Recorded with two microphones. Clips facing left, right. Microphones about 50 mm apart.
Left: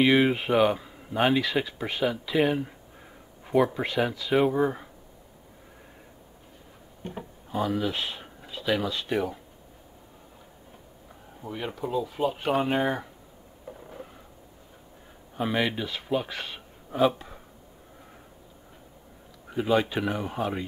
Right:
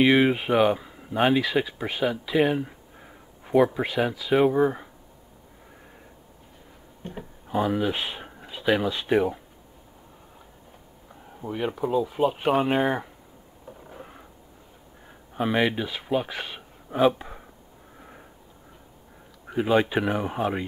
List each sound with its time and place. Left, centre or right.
0.0 s speech: centre
7.4 s speech: centre
11.4 s speech: centre
15.3 s a man's voice: centre
19.4 s speech: right